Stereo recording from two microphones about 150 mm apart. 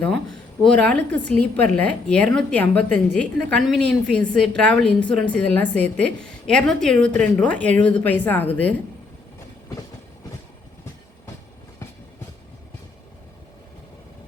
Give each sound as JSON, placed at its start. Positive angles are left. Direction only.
{"t": 0.0, "sound": "a woman's voice", "side_deg": 5}